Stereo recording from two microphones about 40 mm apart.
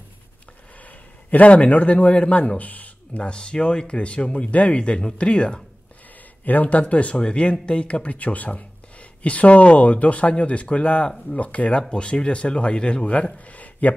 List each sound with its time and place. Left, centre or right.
0.8 s a sound: left
2.0 s speech: left
3.2 s speech: left
6.4 s speech: left
11.3 s speech: left
13.5 s a sound: left